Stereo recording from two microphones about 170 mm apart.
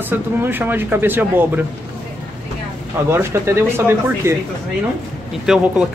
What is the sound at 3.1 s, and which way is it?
Speech, 15° right (ahead or behind).